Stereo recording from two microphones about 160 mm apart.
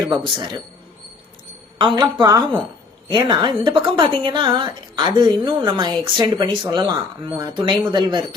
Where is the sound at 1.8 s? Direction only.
30° right (ahead or behind).